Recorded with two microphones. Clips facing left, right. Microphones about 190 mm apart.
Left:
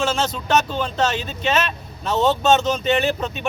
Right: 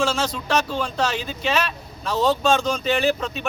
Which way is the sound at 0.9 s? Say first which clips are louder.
Left 2 dB; 5° right (ahead or behind).